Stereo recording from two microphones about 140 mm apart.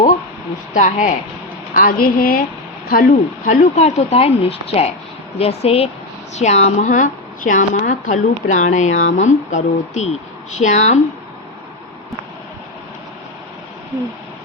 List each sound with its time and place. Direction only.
0.7 s a woman's voice: 65° left (ahead or behind)
1.7 s a woman's voice: 85° left; by 11.0 s 55° left (ahead or behind)